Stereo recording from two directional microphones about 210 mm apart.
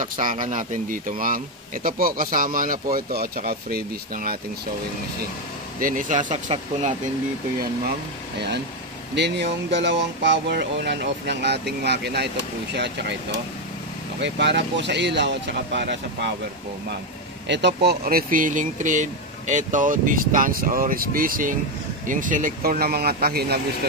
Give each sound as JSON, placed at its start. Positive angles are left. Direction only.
{"t": 0.0, "sound": "speech", "side_deg": -40}
{"t": 5.8, "sound": "speech", "side_deg": -40}
{"t": 9.1, "sound": "speech", "side_deg": -55}
{"t": 17.5, "sound": "speech", "side_deg": -55}